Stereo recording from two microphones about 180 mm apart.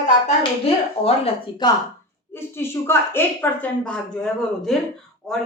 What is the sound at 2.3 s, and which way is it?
A woman's voice, 15° left (ahead or behind).